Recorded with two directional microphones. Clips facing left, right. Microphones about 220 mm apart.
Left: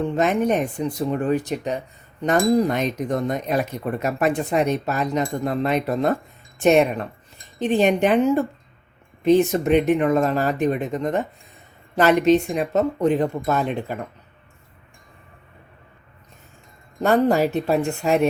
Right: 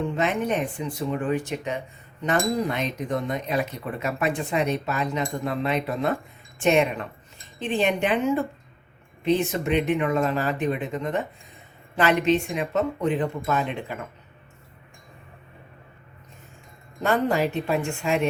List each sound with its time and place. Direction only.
0.2 s speech: 45° left (ahead or behind)
9.2 s speech: 40° left (ahead or behind)
17.0 s speech: 40° left (ahead or behind)